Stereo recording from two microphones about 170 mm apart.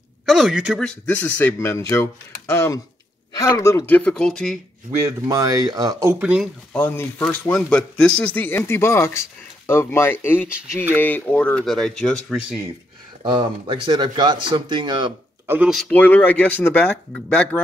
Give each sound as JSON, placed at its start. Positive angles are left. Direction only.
{"t": 0.3, "sound": "speech", "side_deg": 0}
{"t": 4.9, "sound": "speech", "side_deg": -20}
{"t": 6.7, "sound": "speech", "side_deg": 10}
{"t": 13.2, "sound": "speech", "side_deg": -30}
{"t": 15.4, "sound": "speech", "side_deg": -10}
{"t": 15.7, "sound": "speech", "side_deg": 5}